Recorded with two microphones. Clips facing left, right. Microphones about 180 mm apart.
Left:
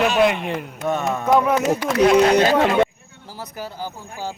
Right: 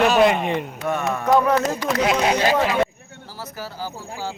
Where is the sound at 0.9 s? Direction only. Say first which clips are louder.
Left 1 dB; 20° left (ahead or behind).